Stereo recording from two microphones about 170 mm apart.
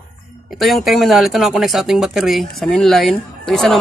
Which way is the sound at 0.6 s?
Centre (ahead or behind).